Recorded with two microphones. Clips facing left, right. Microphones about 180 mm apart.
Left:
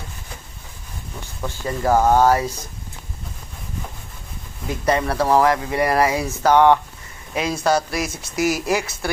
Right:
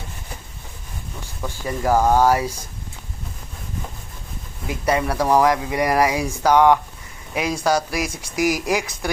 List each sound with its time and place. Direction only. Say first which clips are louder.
1.5 s speech: left 1 dB; 10° right (ahead or behind)
4.7 s speech: left 1 dB; 10° right (ahead or behind)